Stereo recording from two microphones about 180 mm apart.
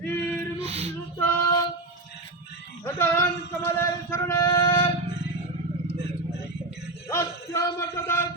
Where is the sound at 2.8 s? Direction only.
15° left (ahead or behind).